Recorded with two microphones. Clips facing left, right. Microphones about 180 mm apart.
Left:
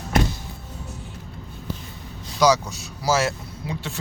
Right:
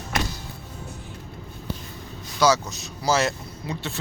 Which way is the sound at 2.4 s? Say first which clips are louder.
Left 2 dB; 15° left (ahead or behind).